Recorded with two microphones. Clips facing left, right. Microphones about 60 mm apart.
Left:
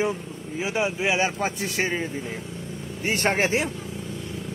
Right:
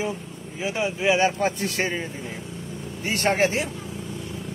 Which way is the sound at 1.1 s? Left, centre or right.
Centre.